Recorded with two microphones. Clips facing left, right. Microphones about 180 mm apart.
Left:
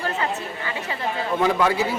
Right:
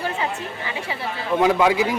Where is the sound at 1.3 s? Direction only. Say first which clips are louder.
Right 4 dB; 10° right (ahead or behind).